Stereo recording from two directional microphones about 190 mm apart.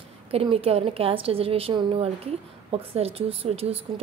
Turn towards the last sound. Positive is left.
turn(degrees=-30)  # may be behind; listen again after turning